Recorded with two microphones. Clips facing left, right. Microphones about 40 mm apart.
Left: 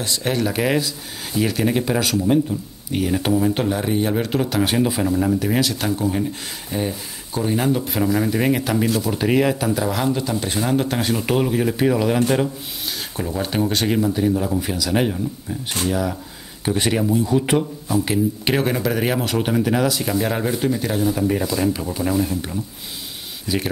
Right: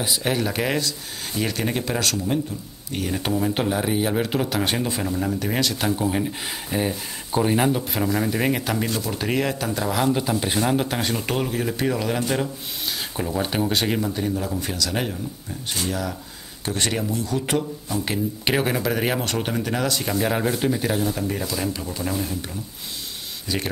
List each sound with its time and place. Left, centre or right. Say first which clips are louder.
0.0 s speech: left 2 dB; centre
7.7 s speech: left 3 dB; centre
13.1 s speech: left 2 dB; centre
17.8 s speech: left 5 dB; centre
23.5 s speech: left 4 dB; centre